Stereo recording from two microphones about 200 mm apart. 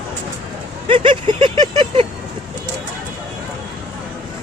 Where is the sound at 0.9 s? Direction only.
25° right (ahead or behind).